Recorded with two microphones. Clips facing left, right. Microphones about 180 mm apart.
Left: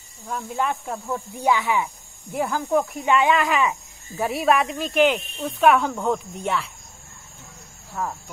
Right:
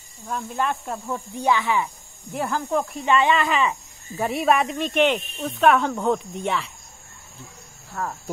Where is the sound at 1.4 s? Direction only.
10° left (ahead or behind).